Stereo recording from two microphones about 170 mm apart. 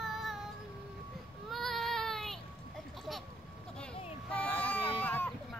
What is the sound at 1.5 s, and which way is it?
Baby cry, centre (ahead or behind).